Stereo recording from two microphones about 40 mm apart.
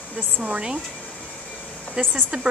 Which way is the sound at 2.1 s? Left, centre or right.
Centre.